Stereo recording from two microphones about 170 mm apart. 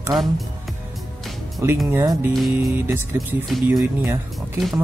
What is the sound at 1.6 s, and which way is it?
Speech, 15° right (ahead or behind).